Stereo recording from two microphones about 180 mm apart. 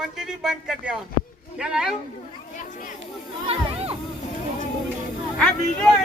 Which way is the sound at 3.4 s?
35° right (ahead or behind).